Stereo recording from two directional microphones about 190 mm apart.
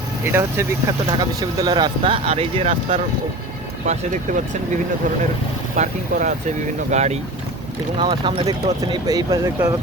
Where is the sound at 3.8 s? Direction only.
40° right (ahead or behind).